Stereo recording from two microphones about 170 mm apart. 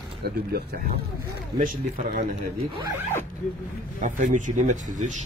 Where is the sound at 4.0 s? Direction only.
50° right (ahead or behind).